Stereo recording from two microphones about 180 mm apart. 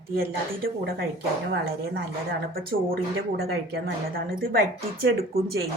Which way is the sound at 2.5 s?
55° right (ahead or behind).